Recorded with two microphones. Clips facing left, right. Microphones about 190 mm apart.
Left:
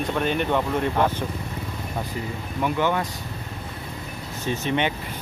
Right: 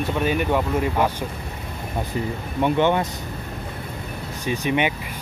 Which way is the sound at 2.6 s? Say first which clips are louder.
Right 4 dB; 25° right (ahead or behind).